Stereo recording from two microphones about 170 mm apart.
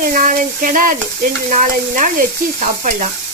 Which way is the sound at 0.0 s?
55° right (ahead or behind).